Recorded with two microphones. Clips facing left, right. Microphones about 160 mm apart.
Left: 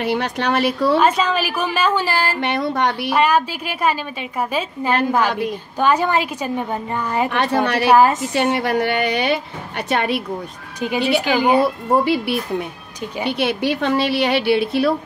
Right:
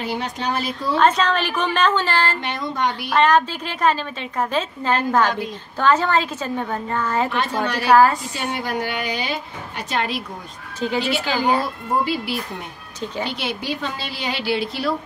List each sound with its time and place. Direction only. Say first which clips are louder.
0.0 s speech: left 5 dB; 65° left (ahead or behind)
0.9 s a woman's voice: left 1 dB; 10° left (ahead or behind)
2.4 s a woman's voice: left 4 dB; 65° left (ahead or behind)
3.1 s a woman's voice: right 2 dB; 10° left (ahead or behind)
7.2 s a woman's voice: left 4 dB; 65° left (ahead or behind)
7.9 s a woman's voice: even; 20° left (ahead or behind)
8.3 s a woman's voice: left 7 dB; 70° left (ahead or behind)
10.8 s a woman's voice: left 3 dB; 15° left (ahead or behind)
11.6 s a woman's voice: left 6 dB; 65° left (ahead or behind)